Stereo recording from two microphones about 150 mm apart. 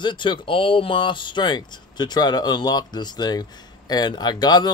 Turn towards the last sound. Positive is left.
turn(degrees=30)  # may be behind; listen again after turning